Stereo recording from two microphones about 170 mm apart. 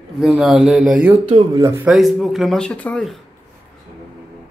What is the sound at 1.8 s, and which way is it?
Speech, centre (ahead or behind).